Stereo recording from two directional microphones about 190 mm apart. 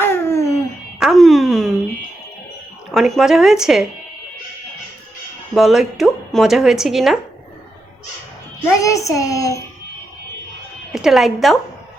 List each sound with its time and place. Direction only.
0.0 s a sound: 15° left (ahead or behind)
0.9 s a sound: centre (ahead or behind)
2.9 s speech: centre (ahead or behind)
5.5 s speech: centre (ahead or behind)
8.6 s a child's voice: 15° left (ahead or behind)
10.9 s speech: centre (ahead or behind)